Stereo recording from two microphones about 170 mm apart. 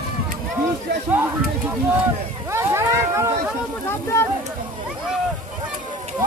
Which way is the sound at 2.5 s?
15° right (ahead or behind).